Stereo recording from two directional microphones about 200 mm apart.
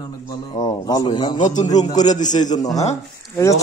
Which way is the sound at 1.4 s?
35° left (ahead or behind).